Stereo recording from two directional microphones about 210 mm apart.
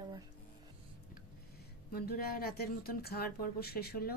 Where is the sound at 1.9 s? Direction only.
45° left (ahead or behind).